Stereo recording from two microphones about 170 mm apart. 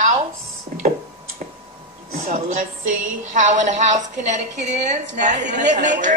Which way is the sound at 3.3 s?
45° right (ahead or behind).